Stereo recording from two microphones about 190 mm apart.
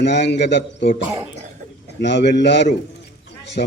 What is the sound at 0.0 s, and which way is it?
Speech, 65° left (ahead or behind).